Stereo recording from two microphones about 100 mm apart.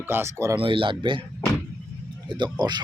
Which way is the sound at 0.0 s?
25° right (ahead or behind).